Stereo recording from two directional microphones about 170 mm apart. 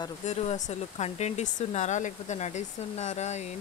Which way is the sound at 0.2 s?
40° left (ahead or behind).